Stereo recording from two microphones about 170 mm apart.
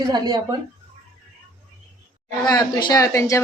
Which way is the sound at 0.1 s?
25° right (ahead or behind).